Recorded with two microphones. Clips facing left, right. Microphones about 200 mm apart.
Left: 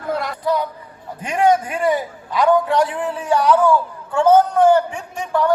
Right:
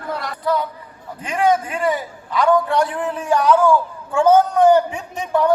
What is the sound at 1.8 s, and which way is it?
A man's voice, 15° left (ahead or behind).